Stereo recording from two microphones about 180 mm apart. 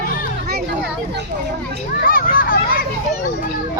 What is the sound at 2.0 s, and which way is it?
Children playing, 50° left (ahead or behind).